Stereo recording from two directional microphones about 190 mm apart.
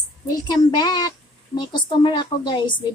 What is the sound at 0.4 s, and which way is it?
A woman's voice, 20° left (ahead or behind).